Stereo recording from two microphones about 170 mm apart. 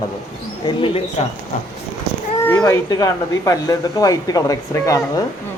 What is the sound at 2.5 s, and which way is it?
Speech, 20° left (ahead or behind).